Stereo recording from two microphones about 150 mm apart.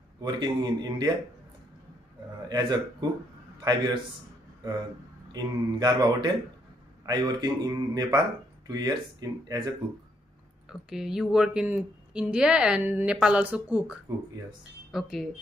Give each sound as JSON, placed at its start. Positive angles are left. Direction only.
{"t": 0.2, "sound": "speech", "side_deg": -30}
{"t": 2.5, "sound": "speech", "side_deg": -25}
{"t": 5.3, "sound": "speech", "side_deg": -25}
{"t": 10.7, "sound": "a woman's voice", "side_deg": -5}